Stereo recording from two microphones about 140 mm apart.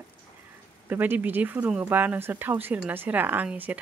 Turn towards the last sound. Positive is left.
turn(degrees=-10)  # may be behind; listen again after turning